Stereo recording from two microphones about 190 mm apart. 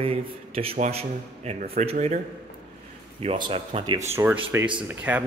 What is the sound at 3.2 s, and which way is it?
Speech, 30° right (ahead or behind).